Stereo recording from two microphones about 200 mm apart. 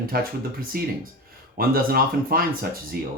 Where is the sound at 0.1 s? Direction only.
50° right (ahead or behind).